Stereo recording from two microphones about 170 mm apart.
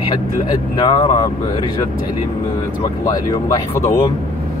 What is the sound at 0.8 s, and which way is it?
Speech, 30° left (ahead or behind).